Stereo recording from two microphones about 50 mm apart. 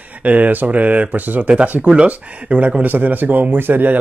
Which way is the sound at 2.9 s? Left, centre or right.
Right.